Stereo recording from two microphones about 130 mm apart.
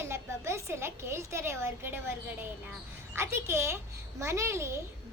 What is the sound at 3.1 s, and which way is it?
A woman's voice, 20° right (ahead or behind).